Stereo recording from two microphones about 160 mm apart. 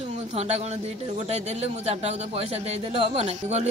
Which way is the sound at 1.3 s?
40° right (ahead or behind).